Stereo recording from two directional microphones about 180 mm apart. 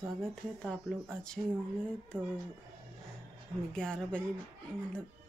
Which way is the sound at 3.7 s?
5° left (ahead or behind).